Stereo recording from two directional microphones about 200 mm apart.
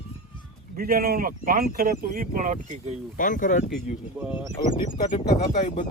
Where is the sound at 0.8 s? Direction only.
50° right (ahead or behind).